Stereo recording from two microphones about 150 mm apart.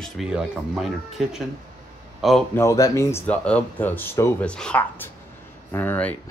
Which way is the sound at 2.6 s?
20° left (ahead or behind).